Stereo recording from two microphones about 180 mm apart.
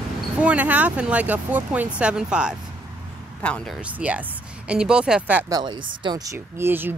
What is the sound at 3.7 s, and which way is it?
Speech, 10° right (ahead or behind).